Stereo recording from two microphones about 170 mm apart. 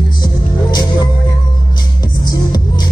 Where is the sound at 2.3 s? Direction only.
25° left (ahead or behind).